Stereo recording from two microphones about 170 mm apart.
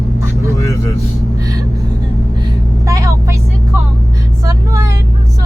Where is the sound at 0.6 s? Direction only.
20° left (ahead or behind).